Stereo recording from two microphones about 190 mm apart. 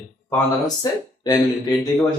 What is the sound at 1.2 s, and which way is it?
Speech, 20° left (ahead or behind).